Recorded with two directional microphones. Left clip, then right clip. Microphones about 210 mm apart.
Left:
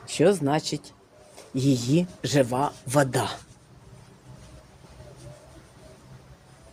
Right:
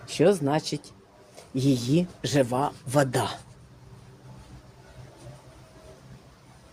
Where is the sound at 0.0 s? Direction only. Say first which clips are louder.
Even; 10° left (ahead or behind).